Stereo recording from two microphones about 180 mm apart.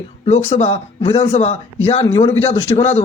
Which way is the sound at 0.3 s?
35° left (ahead or behind).